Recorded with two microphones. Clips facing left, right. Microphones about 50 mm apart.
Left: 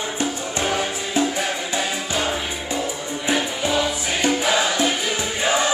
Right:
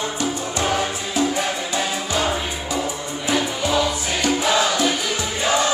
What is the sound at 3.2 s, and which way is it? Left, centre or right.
Music, centre.